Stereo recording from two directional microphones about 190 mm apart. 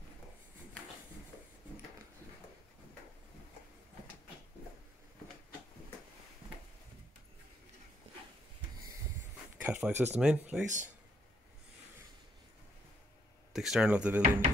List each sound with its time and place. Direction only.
9.6 s speech: 5° right (ahead or behind)
10.6 s speech: 40° right (ahead or behind)
13.5 s speech: centre (ahead or behind)